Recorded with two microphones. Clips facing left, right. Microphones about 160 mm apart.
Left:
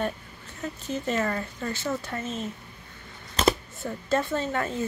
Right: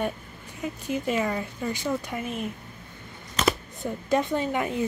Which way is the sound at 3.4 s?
30° left (ahead or behind).